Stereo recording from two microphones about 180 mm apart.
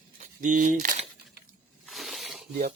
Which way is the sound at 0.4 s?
45° right (ahead or behind).